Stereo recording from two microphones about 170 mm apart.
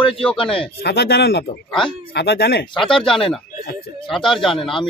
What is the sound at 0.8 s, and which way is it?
Speech, 75° left (ahead or behind).